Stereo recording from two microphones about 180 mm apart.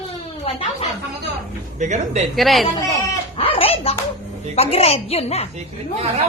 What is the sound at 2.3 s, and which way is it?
Speech, centre (ahead or behind).